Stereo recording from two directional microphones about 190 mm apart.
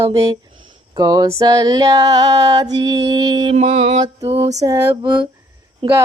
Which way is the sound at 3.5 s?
35° right (ahead or behind).